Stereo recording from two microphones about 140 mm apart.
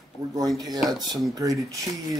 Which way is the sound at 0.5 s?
25° right (ahead or behind).